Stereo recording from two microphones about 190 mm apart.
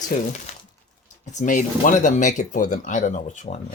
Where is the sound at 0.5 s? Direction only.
35° left (ahead or behind).